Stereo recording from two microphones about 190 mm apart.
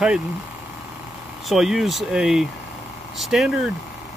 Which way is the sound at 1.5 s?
Centre (ahead or behind).